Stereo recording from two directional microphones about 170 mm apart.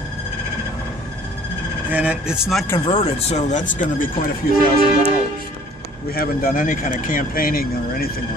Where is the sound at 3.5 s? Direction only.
45° left (ahead or behind).